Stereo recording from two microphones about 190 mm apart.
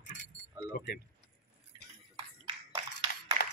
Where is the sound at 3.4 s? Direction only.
60° left (ahead or behind).